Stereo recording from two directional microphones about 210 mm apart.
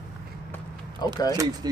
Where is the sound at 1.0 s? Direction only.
20° left (ahead or behind).